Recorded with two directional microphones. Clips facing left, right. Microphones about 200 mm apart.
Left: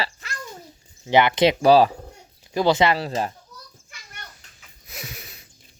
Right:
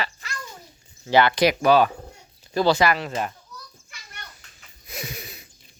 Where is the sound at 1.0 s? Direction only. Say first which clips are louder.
Left 1 dB; 20° left (ahead or behind).